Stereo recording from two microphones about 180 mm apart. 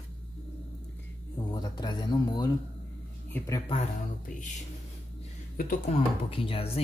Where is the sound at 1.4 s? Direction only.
25° left (ahead or behind).